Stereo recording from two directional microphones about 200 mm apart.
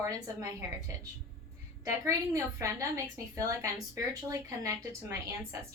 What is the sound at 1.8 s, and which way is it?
A woman's voice, 15° right (ahead or behind).